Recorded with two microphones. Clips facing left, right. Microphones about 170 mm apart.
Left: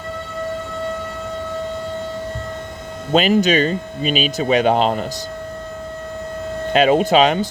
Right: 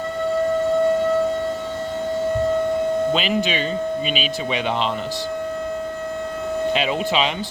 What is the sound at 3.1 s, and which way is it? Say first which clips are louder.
Speech: left 6 dB; 45° left (ahead or behind).